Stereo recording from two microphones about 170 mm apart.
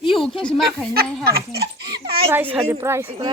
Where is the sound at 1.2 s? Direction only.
65° right (ahead or behind).